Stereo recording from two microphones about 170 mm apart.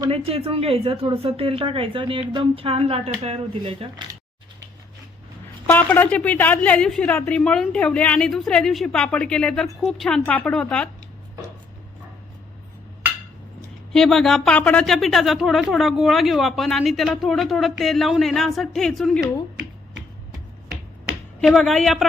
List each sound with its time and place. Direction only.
0.1 s a woman's voice: 35° right (ahead or behind)
5.6 s a woman's voice: 10° left (ahead or behind)
13.9 s a woman's voice: centre (ahead or behind)
21.1 s a sound: centre (ahead or behind)